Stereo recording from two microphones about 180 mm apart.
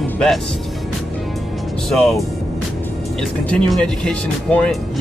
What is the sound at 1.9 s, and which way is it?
Speech, centre (ahead or behind).